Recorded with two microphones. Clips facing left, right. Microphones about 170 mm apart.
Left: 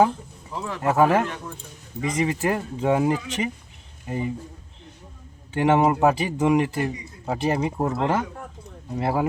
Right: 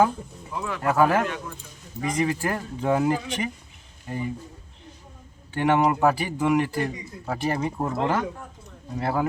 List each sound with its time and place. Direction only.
0.5 s a man's voice: 30° left (ahead or behind)
0.8 s a man's voice: 20° left (ahead or behind)
5.5 s a man's voice: 20° left (ahead or behind)